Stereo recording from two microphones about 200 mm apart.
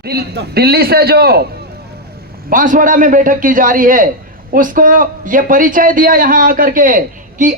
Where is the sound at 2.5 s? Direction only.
40° right (ahead or behind).